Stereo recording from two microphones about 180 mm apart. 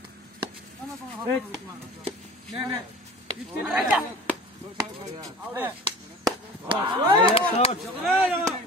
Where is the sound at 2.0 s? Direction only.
30° right (ahead or behind).